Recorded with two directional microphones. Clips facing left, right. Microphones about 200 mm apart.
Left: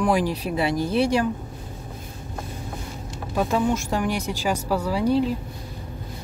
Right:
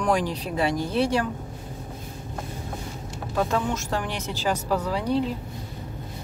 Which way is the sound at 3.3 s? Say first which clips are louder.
Left 3 dB; 10° left (ahead or behind).